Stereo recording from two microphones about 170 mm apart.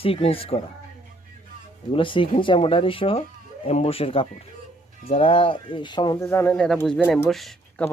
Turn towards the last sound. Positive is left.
turn(degrees=0)  # may be behind; listen again after turning